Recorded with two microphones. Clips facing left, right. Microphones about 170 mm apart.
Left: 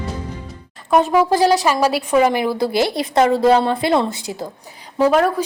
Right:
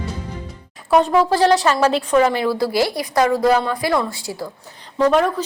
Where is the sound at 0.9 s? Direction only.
5° left (ahead or behind); by 4.5 s 20° left (ahead or behind).